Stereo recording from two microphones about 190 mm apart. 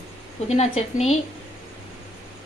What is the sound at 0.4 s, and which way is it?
Speech, 35° left (ahead or behind).